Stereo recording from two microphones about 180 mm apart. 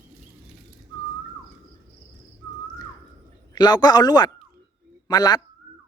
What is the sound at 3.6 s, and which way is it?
Speech, 25° left (ahead or behind).